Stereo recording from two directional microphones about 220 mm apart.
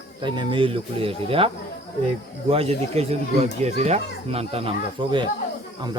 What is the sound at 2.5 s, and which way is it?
Speech, 25° right (ahead or behind).